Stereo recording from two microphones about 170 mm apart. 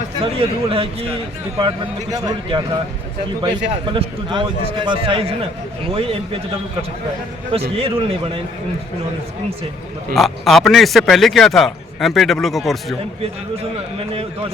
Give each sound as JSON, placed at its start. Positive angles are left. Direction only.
{"t": 0.2, "sound": "a man's voice", "side_deg": -30}
{"t": 3.9, "sound": "a man's voice", "side_deg": -30}
{"t": 7.8, "sound": "a man's voice", "side_deg": -35}
{"t": 10.2, "sound": "a man's voice", "side_deg": 0}